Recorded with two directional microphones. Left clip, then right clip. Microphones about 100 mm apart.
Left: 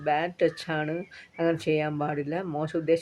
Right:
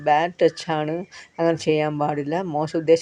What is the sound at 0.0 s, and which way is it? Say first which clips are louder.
Speech: right 7 dB; 35° right (ahead or behind).